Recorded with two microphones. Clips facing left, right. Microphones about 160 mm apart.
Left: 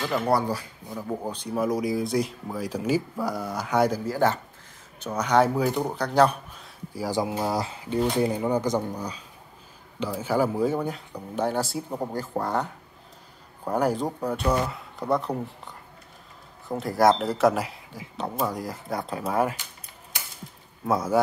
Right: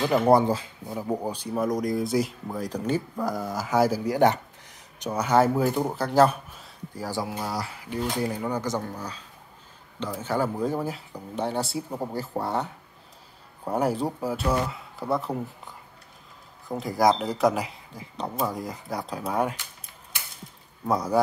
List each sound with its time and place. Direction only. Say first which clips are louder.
0.0 s speech: right 5 dB; 20° right (ahead or behind)
1.6 s speech: left 1 dB; 5° left (ahead or behind)
4.0 s speech: right 3 dB; 15° right (ahead or behind)
6.9 s speech: left 4 dB; 15° left (ahead or behind)
20.8 s speech: left 1 dB; centre (ahead or behind)